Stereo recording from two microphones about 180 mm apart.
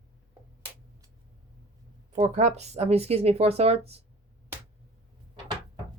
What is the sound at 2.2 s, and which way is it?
Speech, 40° right (ahead or behind).